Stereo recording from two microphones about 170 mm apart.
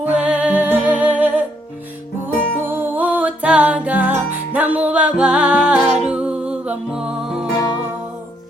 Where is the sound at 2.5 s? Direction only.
10° right (ahead or behind).